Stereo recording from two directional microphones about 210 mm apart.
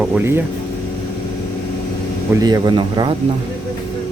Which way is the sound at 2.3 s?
20° right (ahead or behind).